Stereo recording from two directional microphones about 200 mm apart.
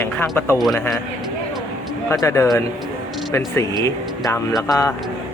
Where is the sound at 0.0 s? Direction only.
10° left (ahead or behind).